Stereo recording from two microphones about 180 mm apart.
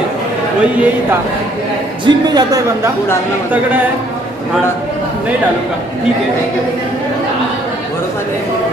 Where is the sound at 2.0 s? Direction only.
20° right (ahead or behind).